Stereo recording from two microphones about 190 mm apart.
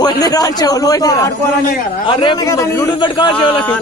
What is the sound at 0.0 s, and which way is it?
A man's voice, 20° left (ahead or behind).